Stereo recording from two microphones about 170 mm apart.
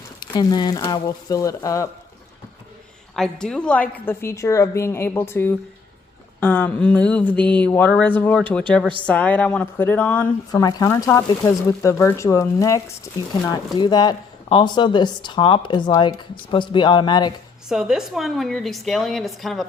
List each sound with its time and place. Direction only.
0.2 s speech: 25° left (ahead or behind)
3.2 s a woman's voice: 5° left (ahead or behind)
10.5 s speech: 25° left (ahead or behind)
17.7 s a woman's voice: 5° right (ahead or behind)